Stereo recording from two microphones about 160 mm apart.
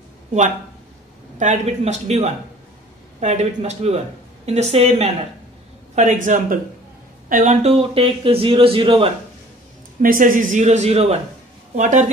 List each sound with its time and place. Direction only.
1.4 s a man's voice: 45° right (ahead or behind)
5.9 s a man's voice: 50° right (ahead or behind)
7.6 s speech: 40° right (ahead or behind)
10.0 s a man's voice: 55° right (ahead or behind)